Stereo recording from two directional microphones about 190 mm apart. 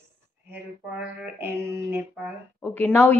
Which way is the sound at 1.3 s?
15° right (ahead or behind).